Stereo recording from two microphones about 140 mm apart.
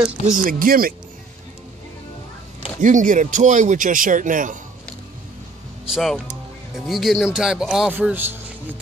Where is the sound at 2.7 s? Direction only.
65° right (ahead or behind).